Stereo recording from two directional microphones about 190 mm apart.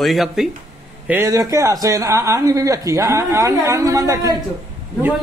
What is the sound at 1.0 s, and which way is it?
A man's voice, 15° right (ahead or behind).